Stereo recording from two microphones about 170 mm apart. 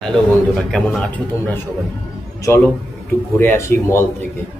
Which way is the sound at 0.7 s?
5° left (ahead or behind).